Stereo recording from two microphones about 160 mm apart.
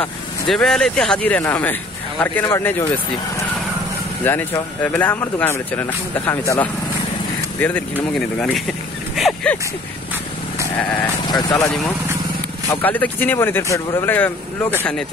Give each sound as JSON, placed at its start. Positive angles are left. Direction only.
{"t": 0.0, "sound": "speech", "side_deg": 5}
{"t": 4.2, "sound": "speech", "side_deg": 10}
{"t": 11.2, "sound": "speech", "side_deg": 25}
{"t": 12.8, "sound": "speech", "side_deg": 10}